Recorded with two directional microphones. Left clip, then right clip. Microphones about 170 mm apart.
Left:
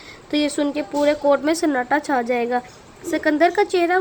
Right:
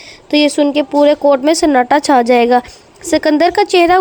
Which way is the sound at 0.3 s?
30° right (ahead or behind).